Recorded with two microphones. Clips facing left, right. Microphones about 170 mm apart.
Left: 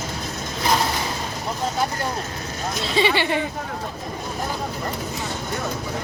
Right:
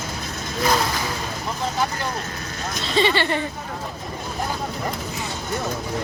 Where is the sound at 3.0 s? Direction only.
10° left (ahead or behind).